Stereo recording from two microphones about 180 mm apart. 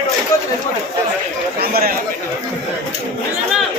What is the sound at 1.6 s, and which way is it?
Speech, 55° right (ahead or behind).